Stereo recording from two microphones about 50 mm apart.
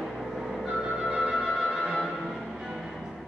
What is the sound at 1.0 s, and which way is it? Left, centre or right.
Music, right.